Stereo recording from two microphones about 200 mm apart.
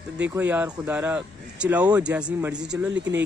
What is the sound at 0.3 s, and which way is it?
Speech, 10° right (ahead or behind).